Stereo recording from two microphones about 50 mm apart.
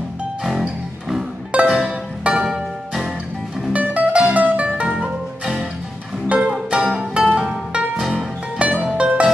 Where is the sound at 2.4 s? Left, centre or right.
Centre.